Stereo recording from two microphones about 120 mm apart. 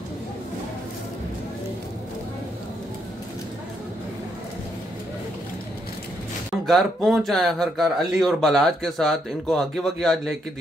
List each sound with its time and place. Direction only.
6.6 s speech: centre (ahead or behind)